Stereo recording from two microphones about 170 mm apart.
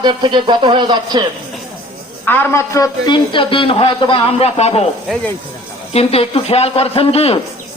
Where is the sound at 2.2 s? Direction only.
10° left (ahead or behind).